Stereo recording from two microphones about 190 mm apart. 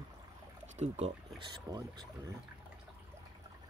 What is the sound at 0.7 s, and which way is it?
Speech, 35° right (ahead or behind).